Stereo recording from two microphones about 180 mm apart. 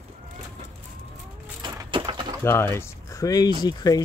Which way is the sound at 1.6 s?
25° right (ahead or behind).